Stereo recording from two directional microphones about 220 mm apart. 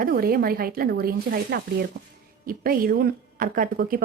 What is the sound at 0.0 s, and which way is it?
Speech, 40° right (ahead or behind).